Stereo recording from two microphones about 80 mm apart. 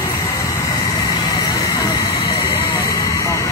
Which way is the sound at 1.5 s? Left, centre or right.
Left.